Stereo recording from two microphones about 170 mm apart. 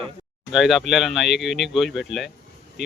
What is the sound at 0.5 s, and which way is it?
Speech, centre (ahead or behind).